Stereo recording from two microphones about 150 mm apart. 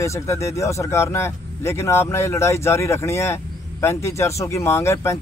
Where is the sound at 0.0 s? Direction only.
20° left (ahead or behind).